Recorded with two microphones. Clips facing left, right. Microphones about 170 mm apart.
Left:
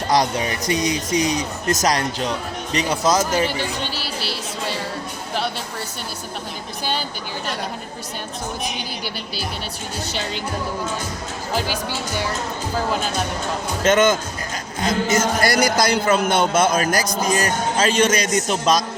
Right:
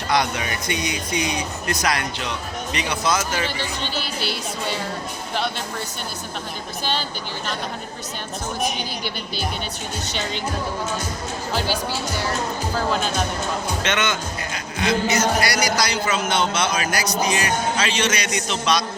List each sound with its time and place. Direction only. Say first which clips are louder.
0.1 s speech: left 3 dB; 40° left (ahead or behind)
4.0 s speech: right 1 dB; centre (ahead or behind)
13.8 s speech: left 11 dB; 45° left (ahead or behind)